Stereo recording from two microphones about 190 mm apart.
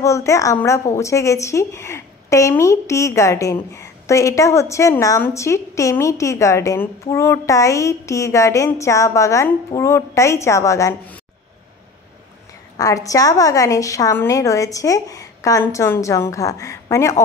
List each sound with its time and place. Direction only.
0.0 s a woman's voice: 15° left (ahead or behind)
12.7 s a woman's voice: 20° left (ahead or behind)